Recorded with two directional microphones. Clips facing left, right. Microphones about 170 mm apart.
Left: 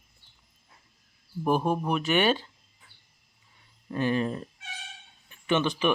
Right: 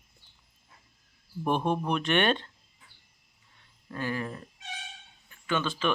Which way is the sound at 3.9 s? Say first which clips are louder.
Left 6 dB; 20° left (ahead or behind).